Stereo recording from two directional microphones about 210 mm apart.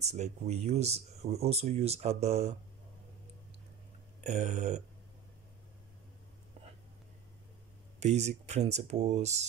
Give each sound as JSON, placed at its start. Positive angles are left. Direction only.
{"t": 0.0, "sound": "speech", "side_deg": -30}
{"t": 4.2, "sound": "speech", "side_deg": -35}
{"t": 8.0, "sound": "speech", "side_deg": -30}